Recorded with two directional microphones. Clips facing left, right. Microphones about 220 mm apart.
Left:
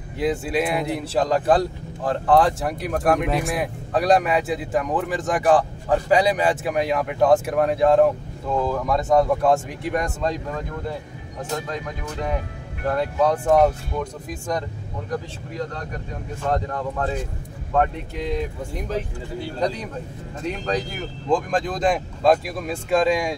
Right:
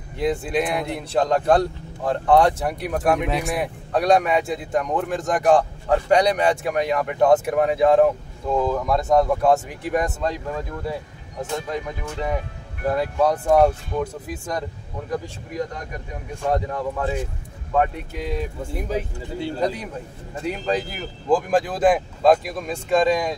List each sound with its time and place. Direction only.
0.2 s speech: centre (ahead or behind)
20.4 s speech: 5° right (ahead or behind)